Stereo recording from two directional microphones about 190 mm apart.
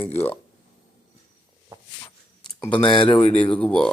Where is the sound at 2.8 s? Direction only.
25° left (ahead or behind).